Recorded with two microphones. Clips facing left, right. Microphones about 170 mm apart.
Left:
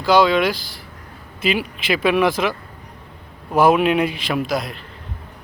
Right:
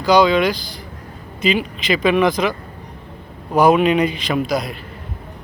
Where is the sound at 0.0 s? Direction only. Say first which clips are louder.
Right 1 dB; centre (ahead or behind).